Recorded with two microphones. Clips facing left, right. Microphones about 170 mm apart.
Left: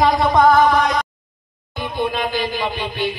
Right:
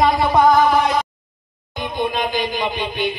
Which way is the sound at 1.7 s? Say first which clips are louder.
Even; 5° left (ahead or behind).